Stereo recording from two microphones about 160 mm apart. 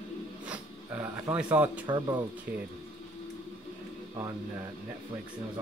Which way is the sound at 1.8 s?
30° right (ahead or behind).